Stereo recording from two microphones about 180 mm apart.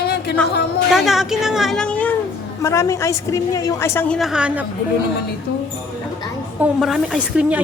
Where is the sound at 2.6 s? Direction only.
15° left (ahead or behind).